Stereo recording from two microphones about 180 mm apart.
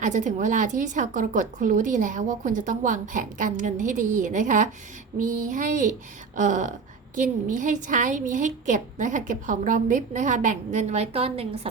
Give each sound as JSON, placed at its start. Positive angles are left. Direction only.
{"t": 0.0, "sound": "a woman's voice", "side_deg": -45}